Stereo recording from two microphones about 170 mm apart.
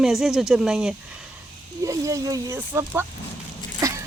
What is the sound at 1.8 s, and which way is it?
Speech, 20° right (ahead or behind).